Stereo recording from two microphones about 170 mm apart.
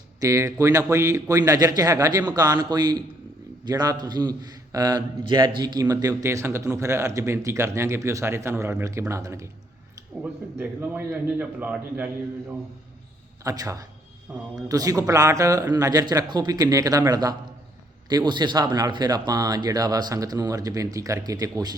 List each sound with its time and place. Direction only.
0.2 s a man's voice: 20° right (ahead or behind)
10.6 s a man's voice: 10° right (ahead or behind)
13.4 s speech: 20° right (ahead or behind)